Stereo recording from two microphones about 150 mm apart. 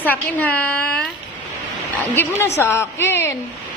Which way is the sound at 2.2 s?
15° left (ahead or behind).